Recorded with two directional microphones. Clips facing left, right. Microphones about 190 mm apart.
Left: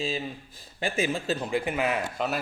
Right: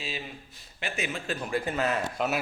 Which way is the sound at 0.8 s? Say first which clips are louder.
Left 6 dB; 35° left (ahead or behind).